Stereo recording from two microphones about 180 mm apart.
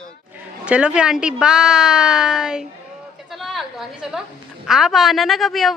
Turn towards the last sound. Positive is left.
turn(degrees=0)  # may be behind; listen again after turning